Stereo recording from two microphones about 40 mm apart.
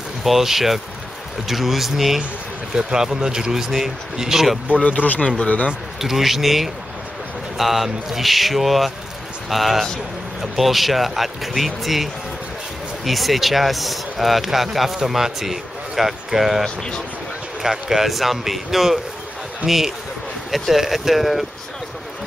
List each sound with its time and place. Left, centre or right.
0.2 s speech: centre
2.7 s speech: centre
4.8 s speech: left
5.9 s speech: centre